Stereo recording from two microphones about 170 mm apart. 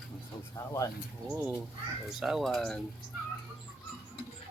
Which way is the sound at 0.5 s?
20° left (ahead or behind).